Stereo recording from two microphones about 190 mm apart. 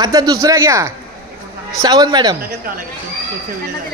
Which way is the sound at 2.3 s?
50° right (ahead or behind).